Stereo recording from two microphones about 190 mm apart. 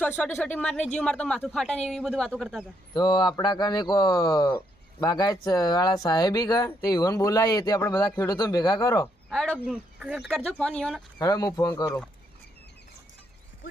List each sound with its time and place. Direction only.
0.0 s speech: 10° left (ahead or behind)
2.9 s speech: 25° left (ahead or behind)
9.3 s speech: centre (ahead or behind)
11.2 s speech: 20° left (ahead or behind)